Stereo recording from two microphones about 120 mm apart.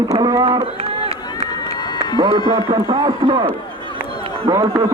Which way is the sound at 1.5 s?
35° left (ahead or behind).